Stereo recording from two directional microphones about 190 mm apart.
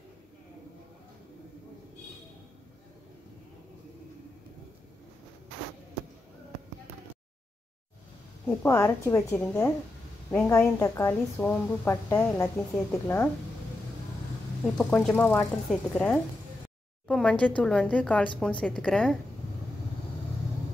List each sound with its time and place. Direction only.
8.5 s a woman's voice: 10° left (ahead or behind)
14.8 s a woman's voice: centre (ahead or behind)